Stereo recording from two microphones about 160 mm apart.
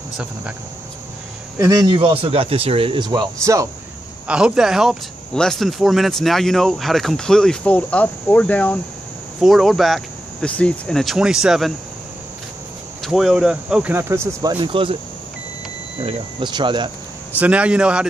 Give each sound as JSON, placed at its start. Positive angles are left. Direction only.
{"t": 1.6, "sound": "speech", "side_deg": -25}
{"t": 4.3, "sound": "speech", "side_deg": -5}
{"t": 9.4, "sound": "speech", "side_deg": 0}
{"t": 13.0, "sound": "speech", "side_deg": 0}
{"t": 14.6, "sound": "speech", "side_deg": -30}
{"t": 16.0, "sound": "speech", "side_deg": -35}
{"t": 17.4, "sound": "speech", "side_deg": -10}